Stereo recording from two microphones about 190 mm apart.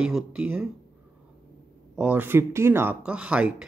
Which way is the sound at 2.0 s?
10° right (ahead or behind).